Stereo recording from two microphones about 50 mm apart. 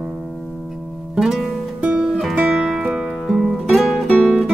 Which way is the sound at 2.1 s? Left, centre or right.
Centre.